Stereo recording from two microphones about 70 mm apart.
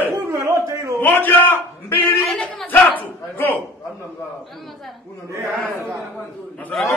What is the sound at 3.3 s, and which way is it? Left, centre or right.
Speech, left.